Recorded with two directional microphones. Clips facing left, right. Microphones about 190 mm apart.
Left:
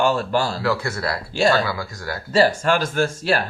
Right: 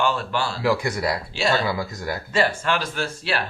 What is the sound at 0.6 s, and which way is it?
Speech, 15° right (ahead or behind).